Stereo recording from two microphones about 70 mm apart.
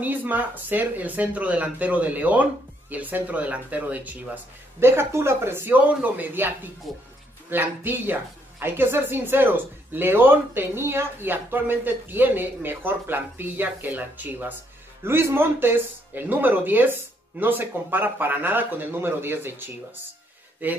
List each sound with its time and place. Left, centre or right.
0.0 s a woman's voice: right
4.7 s a woman's voice: right
15.0 s a woman's voice: right